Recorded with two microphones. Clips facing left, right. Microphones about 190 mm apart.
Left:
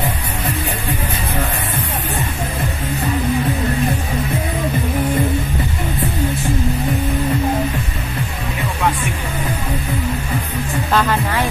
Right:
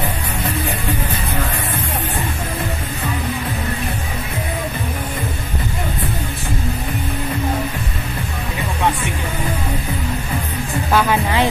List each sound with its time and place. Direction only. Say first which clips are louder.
10.9 s music: right 1 dB; 5° right (ahead or behind)